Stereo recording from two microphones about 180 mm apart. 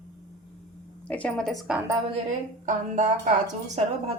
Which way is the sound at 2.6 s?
40° right (ahead or behind).